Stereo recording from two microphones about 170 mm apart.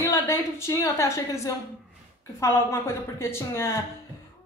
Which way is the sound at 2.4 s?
15° left (ahead or behind).